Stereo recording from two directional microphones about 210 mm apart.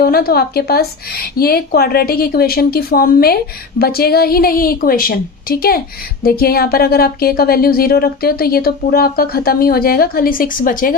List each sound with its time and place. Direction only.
0.0 s speech: 45° left (ahead or behind)